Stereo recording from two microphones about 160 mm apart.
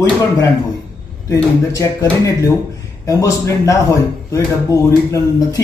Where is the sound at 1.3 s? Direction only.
20° left (ahead or behind).